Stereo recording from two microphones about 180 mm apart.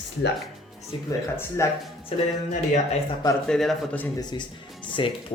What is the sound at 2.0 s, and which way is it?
Speech, 40° left (ahead or behind).